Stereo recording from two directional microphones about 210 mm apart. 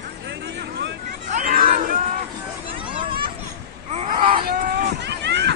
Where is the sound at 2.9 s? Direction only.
25° right (ahead or behind).